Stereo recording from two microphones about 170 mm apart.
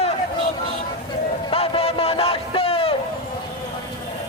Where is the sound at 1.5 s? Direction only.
35° left (ahead or behind).